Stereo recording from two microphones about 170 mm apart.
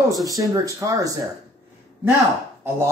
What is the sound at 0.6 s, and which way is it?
Speech, 20° right (ahead or behind).